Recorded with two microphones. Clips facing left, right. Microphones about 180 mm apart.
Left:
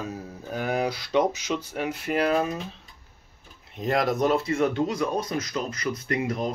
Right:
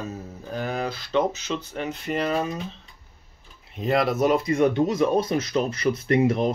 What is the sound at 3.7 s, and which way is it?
Speech, centre (ahead or behind).